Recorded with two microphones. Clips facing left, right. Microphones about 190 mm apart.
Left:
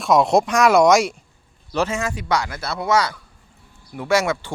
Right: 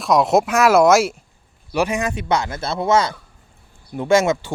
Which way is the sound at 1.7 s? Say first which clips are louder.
Right 2 dB; 15° right (ahead or behind).